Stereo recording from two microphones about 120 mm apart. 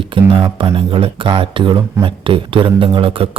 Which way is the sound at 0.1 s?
45° right (ahead or behind).